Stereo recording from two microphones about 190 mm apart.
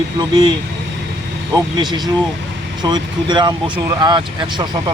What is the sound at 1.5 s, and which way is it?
Speech, 20° right (ahead or behind).